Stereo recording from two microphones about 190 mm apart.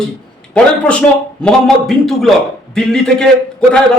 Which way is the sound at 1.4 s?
5° left (ahead or behind).